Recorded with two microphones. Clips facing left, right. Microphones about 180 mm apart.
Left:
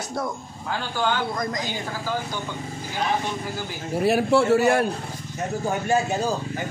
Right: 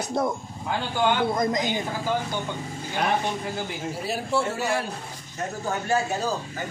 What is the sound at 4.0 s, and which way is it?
Speech, 65° left (ahead or behind).